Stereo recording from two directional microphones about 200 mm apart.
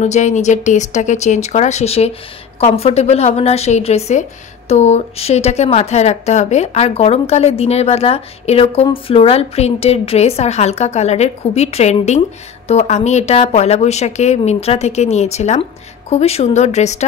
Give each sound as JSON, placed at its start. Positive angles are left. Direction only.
{"t": 0.0, "sound": "a woman's voice", "side_deg": 35}